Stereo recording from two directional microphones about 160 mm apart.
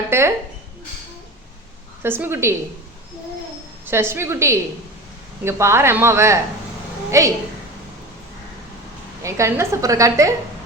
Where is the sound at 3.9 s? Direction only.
15° right (ahead or behind).